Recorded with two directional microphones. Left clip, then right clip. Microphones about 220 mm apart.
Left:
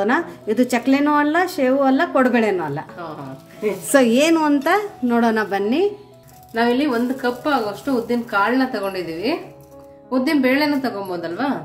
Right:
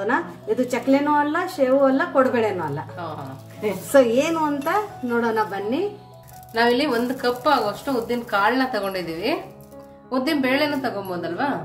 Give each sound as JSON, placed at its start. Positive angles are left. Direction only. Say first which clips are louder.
{"t": 0.7, "sound": "speech", "louder": "even", "side_deg": 50}
{"t": 3.9, "sound": "speech", "louder": "left 2 dB", "side_deg": 50}
{"t": 6.5, "sound": "a woman's voice", "louder": "left 1 dB", "side_deg": -5}